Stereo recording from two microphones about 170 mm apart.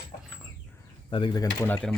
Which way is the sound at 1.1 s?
30° left (ahead or behind).